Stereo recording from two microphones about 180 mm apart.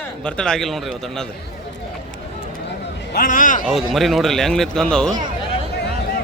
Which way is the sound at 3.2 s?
45° left (ahead or behind).